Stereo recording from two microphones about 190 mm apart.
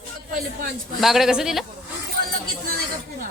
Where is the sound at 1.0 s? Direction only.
Centre (ahead or behind).